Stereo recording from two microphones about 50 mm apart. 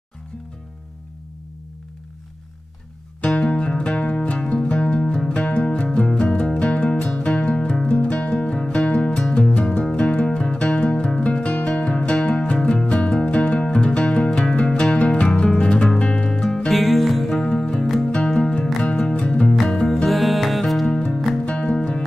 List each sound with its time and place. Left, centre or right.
3.3 s music: centre
16.7 s music: centre
17.3 s music: centre
20.1 s music: centre
20.8 s music: centre